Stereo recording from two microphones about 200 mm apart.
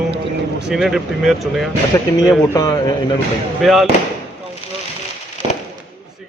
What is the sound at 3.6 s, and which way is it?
Speech, centre (ahead or behind).